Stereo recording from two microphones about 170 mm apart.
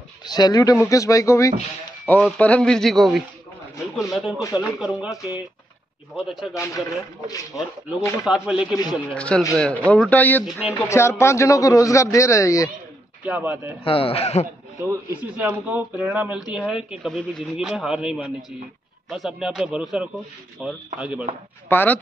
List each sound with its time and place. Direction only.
0.2 s speech: 25° left (ahead or behind)
2.0 s speech: 5° left (ahead or behind)
6.1 s speech: 5° right (ahead or behind)
6.5 s speech: 20° left (ahead or behind)
8.3 s speech: 5° right (ahead or behind)
9.0 s a man's voice: 5° left (ahead or behind)
13.2 s speech: 10° right (ahead or behind)
13.8 s a man's voice: 35° left (ahead or behind)
15.3 s speech: 10° right (ahead or behind)
21.6 s speech: 10° left (ahead or behind)